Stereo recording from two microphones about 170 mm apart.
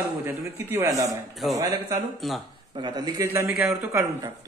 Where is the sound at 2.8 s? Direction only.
25° right (ahead or behind).